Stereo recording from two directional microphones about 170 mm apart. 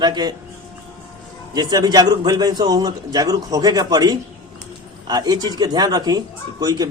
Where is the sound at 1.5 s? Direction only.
25° right (ahead or behind).